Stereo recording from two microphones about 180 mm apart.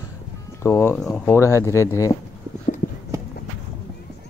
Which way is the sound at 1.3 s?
15° left (ahead or behind).